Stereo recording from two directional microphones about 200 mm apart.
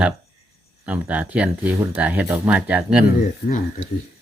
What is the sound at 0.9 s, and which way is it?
Speech, 10° right (ahead or behind).